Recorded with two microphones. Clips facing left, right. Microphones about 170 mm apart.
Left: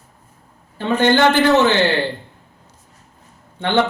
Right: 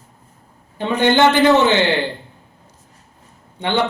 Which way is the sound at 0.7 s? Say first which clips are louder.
Even; 20° right (ahead or behind).